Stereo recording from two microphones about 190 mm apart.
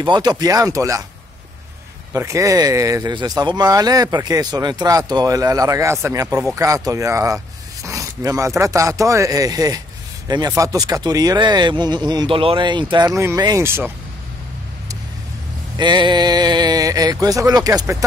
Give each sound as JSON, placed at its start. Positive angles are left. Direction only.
{"t": 0.0, "sound": "speech", "side_deg": -25}
{"t": 2.1, "sound": "speech", "side_deg": -15}
{"t": 15.8, "sound": "speech", "side_deg": -25}